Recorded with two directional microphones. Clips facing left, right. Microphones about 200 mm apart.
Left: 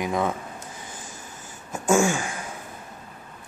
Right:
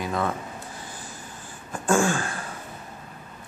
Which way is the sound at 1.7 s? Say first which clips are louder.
Left 2 dB; 10° left (ahead or behind).